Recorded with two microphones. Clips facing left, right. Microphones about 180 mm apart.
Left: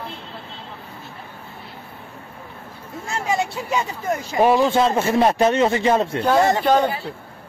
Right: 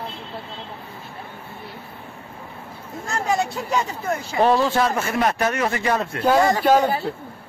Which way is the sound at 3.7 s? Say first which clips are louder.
Left 1 dB; 10° left (ahead or behind).